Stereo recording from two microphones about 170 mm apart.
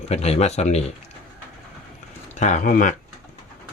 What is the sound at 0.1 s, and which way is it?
Speech, 40° left (ahead or behind).